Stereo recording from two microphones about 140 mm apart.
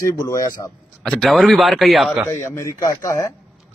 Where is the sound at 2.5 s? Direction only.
20° left (ahead or behind).